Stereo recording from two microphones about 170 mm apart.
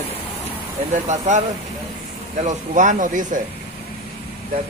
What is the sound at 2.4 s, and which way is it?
Speech, 50° right (ahead or behind).